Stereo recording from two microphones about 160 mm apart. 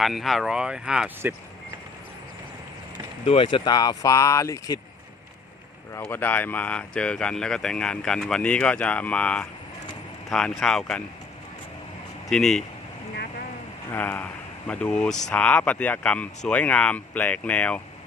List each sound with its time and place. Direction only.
0.0 s speech: centre (ahead or behind)
3.2 s speech: 30° left (ahead or behind)
6.0 s speech: 10° left (ahead or behind)
12.3 s speech: 5° left (ahead or behind)
13.9 s speech: 10° left (ahead or behind)